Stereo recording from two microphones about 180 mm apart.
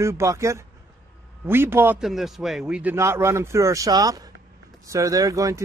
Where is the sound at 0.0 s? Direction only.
15° right (ahead or behind).